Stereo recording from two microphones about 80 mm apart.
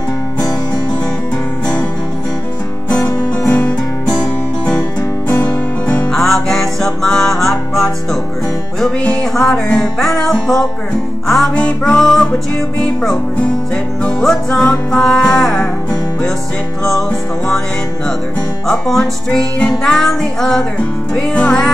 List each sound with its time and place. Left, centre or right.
3.4 s music: centre
5.3 s music: centre
6.0 s music: centre
18.7 s music: centre